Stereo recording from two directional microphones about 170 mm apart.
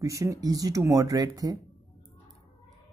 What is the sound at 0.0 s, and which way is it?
Speech, 20° right (ahead or behind).